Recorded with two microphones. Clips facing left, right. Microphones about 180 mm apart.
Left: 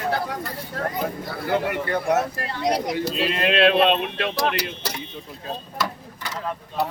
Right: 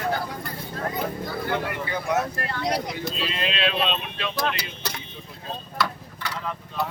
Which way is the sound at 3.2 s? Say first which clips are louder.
Left 9 dB; 60° left (ahead or behind).